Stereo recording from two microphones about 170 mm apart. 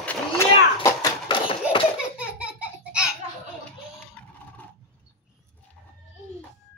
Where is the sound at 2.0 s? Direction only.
5° right (ahead or behind).